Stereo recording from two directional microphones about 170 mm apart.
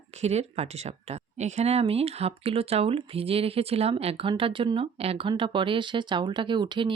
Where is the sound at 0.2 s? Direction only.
40° right (ahead or behind).